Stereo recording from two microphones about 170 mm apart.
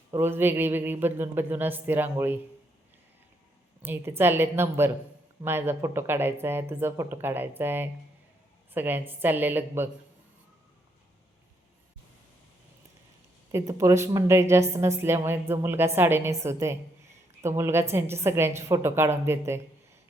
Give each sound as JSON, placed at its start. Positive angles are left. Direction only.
{"t": 0.1, "sound": "a woman's voice", "side_deg": -15}
{"t": 3.8, "sound": "a woman's voice", "side_deg": -15}
{"t": 13.5, "sound": "a woman's voice", "side_deg": -15}